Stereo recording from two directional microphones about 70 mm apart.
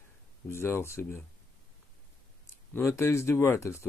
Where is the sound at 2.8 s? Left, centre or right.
Left.